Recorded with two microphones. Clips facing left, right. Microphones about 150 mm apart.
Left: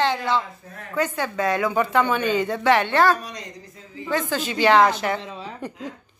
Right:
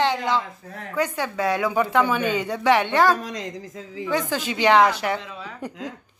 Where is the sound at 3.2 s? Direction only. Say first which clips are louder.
Right 5 dB; 90° right.